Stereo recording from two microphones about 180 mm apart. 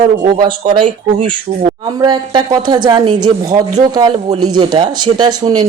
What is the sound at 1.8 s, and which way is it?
Speech, 20° right (ahead or behind).